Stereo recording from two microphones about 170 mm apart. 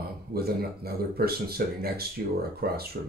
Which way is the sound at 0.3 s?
65° right (ahead or behind).